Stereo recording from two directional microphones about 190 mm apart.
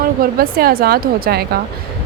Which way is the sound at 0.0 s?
50° right (ahead or behind).